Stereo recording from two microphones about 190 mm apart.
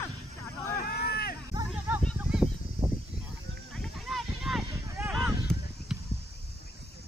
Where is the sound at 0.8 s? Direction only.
55° left (ahead or behind).